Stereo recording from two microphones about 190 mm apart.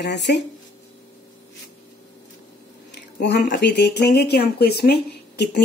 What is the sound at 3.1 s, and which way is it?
Speech, 55° left (ahead or behind).